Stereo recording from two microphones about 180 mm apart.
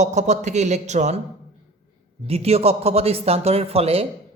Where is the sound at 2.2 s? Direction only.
35° right (ahead or behind).